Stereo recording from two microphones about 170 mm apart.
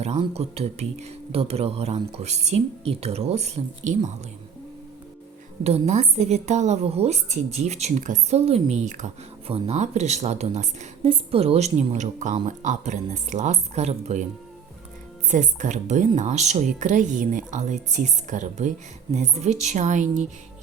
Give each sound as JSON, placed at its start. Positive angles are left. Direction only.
{"t": 0.0, "sound": "a woman's voice", "side_deg": -40}
{"t": 5.6, "sound": "a woman's voice", "side_deg": -40}
{"t": 15.3, "sound": "a woman's voice", "side_deg": -45}